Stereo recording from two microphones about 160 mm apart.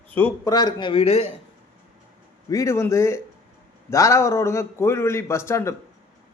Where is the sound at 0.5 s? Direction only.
30° left (ahead or behind).